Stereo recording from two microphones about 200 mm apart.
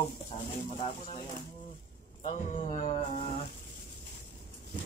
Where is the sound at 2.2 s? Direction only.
35° left (ahead or behind).